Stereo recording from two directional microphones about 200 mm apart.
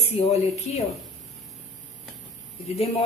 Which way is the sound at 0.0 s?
30° left (ahead or behind).